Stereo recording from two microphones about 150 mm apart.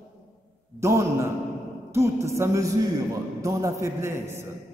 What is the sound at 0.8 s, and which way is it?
A man's voice, 20° right (ahead or behind).